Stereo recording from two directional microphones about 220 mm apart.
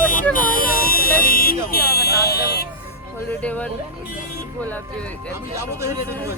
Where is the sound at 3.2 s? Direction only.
5° left (ahead or behind).